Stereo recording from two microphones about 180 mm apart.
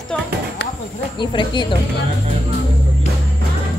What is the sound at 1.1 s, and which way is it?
Speech, 25° left (ahead or behind).